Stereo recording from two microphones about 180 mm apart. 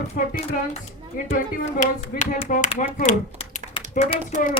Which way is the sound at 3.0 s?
40° left (ahead or behind).